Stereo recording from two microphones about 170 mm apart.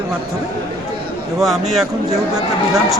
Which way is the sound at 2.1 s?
20° right (ahead or behind).